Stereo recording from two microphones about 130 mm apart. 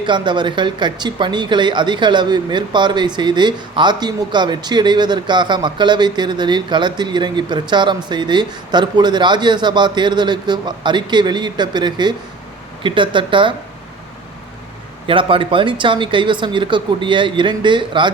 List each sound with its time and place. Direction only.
0.0 s speech: 35° right (ahead or behind)
15.0 s speech: 40° right (ahead or behind)